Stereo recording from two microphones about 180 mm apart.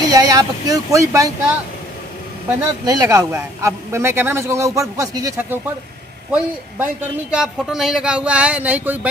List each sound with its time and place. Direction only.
0.0 s speech: 20° right (ahead or behind)
2.8 s a man's voice: 20° right (ahead or behind)
6.3 s a man's voice: 10° right (ahead or behind)